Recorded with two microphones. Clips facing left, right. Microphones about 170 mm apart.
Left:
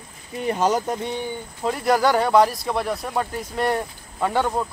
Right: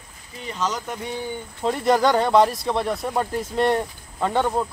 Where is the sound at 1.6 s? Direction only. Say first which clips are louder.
Right 1 dB; 5° left (ahead or behind).